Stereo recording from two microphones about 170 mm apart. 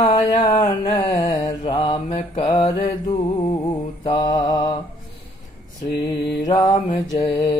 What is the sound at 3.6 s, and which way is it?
Mantra, 25° left (ahead or behind).